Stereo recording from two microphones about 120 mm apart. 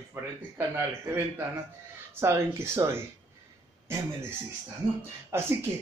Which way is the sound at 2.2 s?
20° right (ahead or behind).